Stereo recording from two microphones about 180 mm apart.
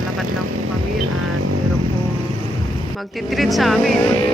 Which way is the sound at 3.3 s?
Centre (ahead or behind).